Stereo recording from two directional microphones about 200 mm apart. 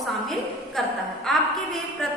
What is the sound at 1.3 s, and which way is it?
Speech, centre (ahead or behind).